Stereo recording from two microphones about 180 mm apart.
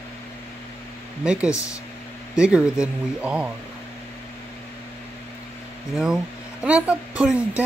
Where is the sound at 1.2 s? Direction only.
5° right (ahead or behind).